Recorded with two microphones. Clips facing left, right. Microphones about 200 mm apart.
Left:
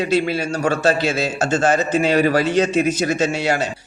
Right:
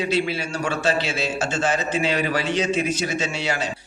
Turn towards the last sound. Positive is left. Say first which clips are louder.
# left 6 dB
turn(degrees=45)  # may be behind; listen again after turning